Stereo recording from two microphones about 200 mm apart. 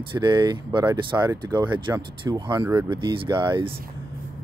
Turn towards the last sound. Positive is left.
turn(degrees=-25)  # may be behind; listen again after turning